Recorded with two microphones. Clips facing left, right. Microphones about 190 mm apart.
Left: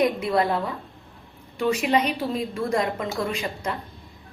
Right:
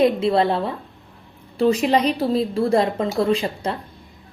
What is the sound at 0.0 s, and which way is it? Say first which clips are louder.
A woman's voice: right 5 dB; 30° right (ahead or behind).